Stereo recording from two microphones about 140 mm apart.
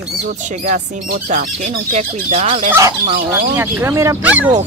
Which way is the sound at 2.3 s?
45° right (ahead or behind).